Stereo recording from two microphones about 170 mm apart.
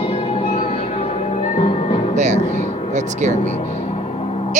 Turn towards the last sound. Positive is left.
turn(degrees=-45)  # may be behind; listen again after turning